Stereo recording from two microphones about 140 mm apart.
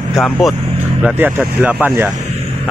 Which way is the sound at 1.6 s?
10° right (ahead or behind).